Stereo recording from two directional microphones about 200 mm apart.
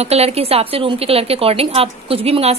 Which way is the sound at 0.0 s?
30° right (ahead or behind).